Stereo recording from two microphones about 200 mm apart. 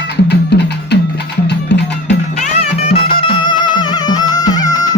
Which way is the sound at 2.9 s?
25° left (ahead or behind).